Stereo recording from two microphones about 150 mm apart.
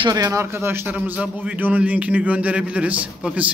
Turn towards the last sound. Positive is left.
turn(degrees=-5)  # may be behind; listen again after turning